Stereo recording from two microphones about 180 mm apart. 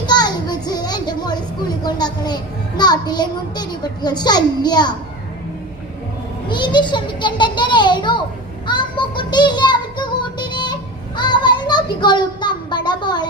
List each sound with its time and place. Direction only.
0.0 s a sound: 25° left (ahead or behind)
1.8 s a child's voice: 25° left (ahead or behind)
6.5 s a child's voice: 25° left (ahead or behind)
8.6 s music: 25° left (ahead or behind)
11.2 s child singing: 25° left (ahead or behind)